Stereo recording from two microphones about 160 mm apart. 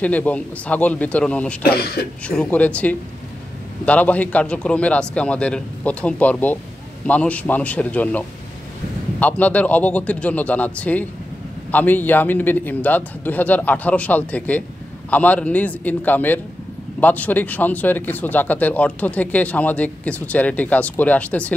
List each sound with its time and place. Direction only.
0.0 s speech: 10° left (ahead or behind)
1.6 s speech: 75° left (ahead or behind)
2.2 s speech: 5° left (ahead or behind)